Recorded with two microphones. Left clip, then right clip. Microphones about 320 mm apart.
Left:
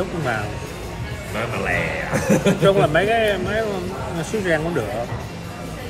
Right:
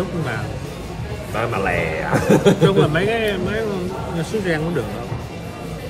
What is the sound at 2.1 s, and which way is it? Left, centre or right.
Speech, right.